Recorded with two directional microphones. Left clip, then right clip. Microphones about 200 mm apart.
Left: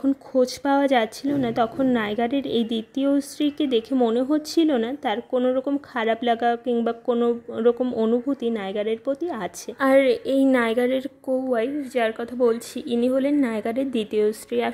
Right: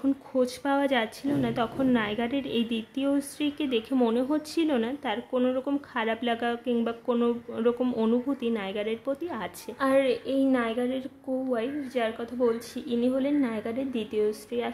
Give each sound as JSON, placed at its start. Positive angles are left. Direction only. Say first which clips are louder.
{"t": 0.0, "sound": "speech", "louder": "left 5 dB", "side_deg": 25}
{"t": 11.5, "sound": "a woman's voice", "louder": "left 6 dB", "side_deg": 30}